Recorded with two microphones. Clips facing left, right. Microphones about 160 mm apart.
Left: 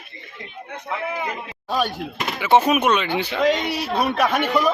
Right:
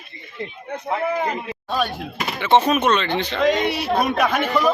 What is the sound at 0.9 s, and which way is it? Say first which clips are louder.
Speech: right 5 dB; 40° right (ahead or behind).